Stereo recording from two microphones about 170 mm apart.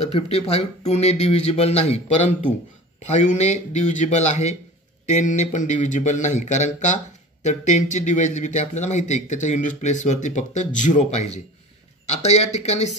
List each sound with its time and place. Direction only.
0.0 s a man's voice: 40° left (ahead or behind)